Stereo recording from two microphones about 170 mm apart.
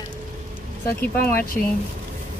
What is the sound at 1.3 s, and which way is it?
Speech, 55° left (ahead or behind).